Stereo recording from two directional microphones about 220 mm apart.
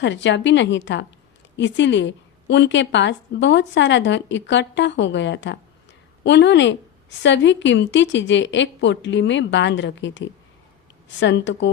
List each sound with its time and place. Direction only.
0.0 s a woman's voice: 55° left (ahead or behind)